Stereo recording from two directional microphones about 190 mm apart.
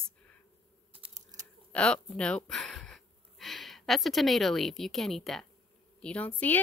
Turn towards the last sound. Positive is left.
turn(degrees=10)  # may be behind; listen again after turning